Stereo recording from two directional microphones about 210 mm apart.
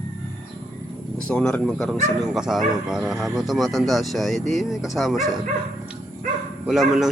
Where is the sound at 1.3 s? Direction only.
5° left (ahead or behind).